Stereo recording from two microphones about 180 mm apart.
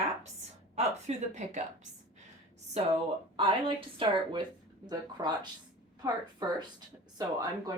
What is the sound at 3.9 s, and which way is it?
Speech, 25° right (ahead or behind).